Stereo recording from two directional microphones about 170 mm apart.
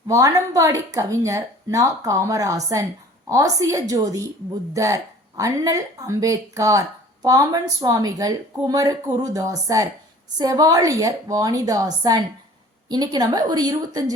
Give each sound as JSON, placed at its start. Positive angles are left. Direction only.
{"t": 0.1, "sound": "speech", "side_deg": -20}